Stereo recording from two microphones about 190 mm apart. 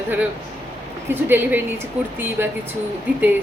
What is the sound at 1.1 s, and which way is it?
A woman's voice, 10° right (ahead or behind).